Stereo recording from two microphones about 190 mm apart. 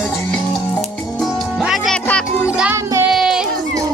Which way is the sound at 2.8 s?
15° right (ahead or behind).